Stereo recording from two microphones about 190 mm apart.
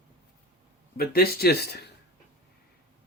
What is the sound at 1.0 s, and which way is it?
Speech, 55° left (ahead or behind).